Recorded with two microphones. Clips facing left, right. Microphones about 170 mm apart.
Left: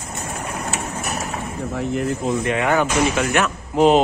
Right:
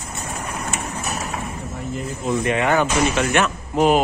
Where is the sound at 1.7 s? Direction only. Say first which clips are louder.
Left 8 dB; 75° left (ahead or behind).